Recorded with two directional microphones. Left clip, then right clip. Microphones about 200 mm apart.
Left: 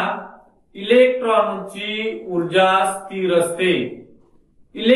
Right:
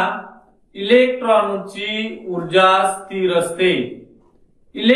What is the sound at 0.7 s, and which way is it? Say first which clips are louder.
Speech: right 1 dB; 15° right (ahead or behind).